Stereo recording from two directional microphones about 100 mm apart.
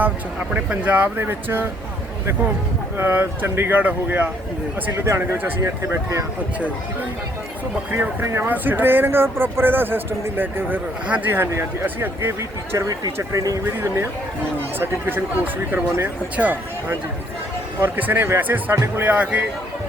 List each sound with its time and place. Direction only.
0.0 s speech: 15° right (ahead or behind)
3.0 s speech: 20° right (ahead or behind)
7.9 s speech: 25° right (ahead or behind)